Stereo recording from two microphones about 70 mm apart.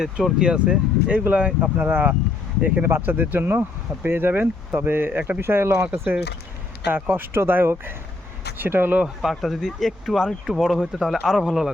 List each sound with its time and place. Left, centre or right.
0.0 s speech: centre
0.3 s speech: centre
2.8 s speech: right
9.2 s speech: centre